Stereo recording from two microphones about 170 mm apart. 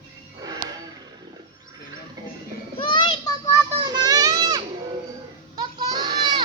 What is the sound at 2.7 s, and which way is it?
Children playing, 30° left (ahead or behind).